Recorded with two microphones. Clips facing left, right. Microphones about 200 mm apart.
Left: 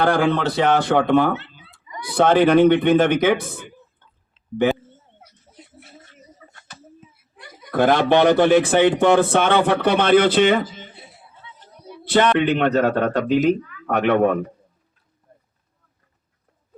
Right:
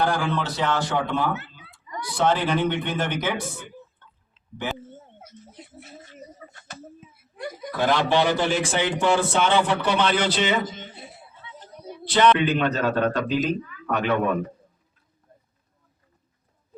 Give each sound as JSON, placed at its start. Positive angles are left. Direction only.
{"t": 0.0, "sound": "a man's voice", "side_deg": 70}
{"t": 1.3, "sound": "a sound", "side_deg": 30}
{"t": 2.1, "sound": "a man's voice", "side_deg": 60}
{"t": 6.4, "sound": "a sound", "side_deg": -50}
{"t": 7.7, "sound": "a man's voice", "side_deg": 55}
{"t": 12.0, "sound": "a man's voice", "side_deg": 50}